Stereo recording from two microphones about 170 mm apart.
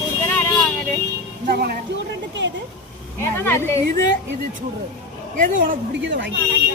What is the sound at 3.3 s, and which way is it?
Speech, 15° left (ahead or behind).